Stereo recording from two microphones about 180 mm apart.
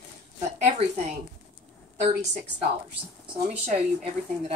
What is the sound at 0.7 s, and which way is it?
Speech, 40° right (ahead or behind).